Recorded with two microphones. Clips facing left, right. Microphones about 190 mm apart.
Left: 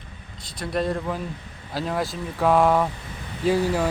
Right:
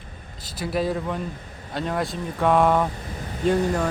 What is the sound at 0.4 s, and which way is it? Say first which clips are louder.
Speech: right 1 dB; 5° right (ahead or behind).